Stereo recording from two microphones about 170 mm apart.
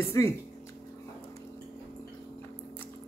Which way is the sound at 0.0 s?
15° left (ahead or behind).